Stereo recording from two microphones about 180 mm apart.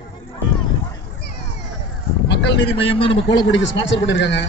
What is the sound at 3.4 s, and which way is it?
A man's voice, 90° left.